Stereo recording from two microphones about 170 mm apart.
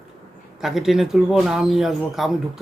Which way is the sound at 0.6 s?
Centre (ahead or behind).